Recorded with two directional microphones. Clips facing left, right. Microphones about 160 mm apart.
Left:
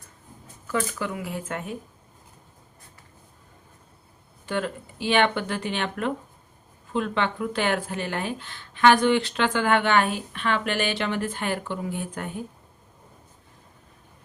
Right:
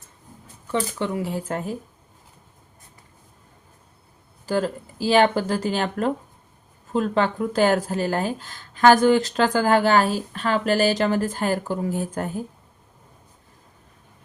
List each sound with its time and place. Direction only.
0.7 s speech: 30° right (ahead or behind)
4.4 s speech: 35° right (ahead or behind)